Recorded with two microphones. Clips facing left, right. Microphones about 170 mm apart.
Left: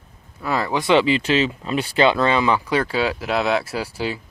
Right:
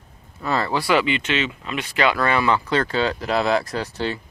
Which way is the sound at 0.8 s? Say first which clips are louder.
Left 7 dB; 30° left (ahead or behind).